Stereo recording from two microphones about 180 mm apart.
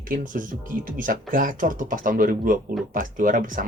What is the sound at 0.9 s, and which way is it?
Speech, 50° right (ahead or behind).